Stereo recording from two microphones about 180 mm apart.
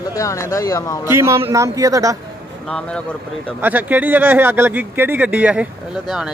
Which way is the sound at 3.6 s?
10° right (ahead or behind).